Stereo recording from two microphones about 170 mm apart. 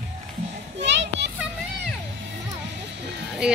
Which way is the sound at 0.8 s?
90° right.